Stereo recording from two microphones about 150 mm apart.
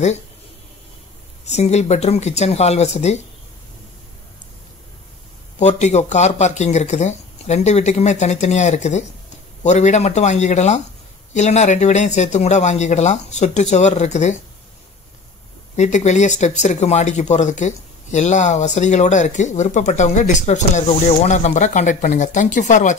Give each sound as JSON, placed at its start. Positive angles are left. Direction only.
{"t": 1.4, "sound": "speech", "side_deg": 45}
{"t": 5.6, "sound": "speech", "side_deg": 50}
{"t": 15.7, "sound": "speech", "side_deg": 50}